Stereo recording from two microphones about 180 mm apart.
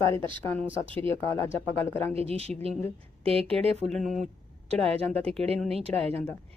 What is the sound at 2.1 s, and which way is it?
Speech, 35° right (ahead or behind).